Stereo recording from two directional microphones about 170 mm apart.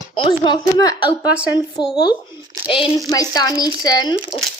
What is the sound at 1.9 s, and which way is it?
Speech, 25° left (ahead or behind).